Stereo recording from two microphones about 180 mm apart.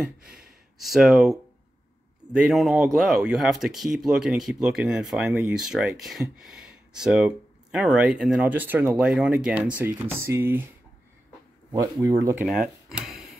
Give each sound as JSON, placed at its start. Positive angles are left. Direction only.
{"t": 0.9, "sound": "speech", "side_deg": 0}
{"t": 11.7, "sound": "speech", "side_deg": -15}
{"t": 12.4, "sound": "speech", "side_deg": -5}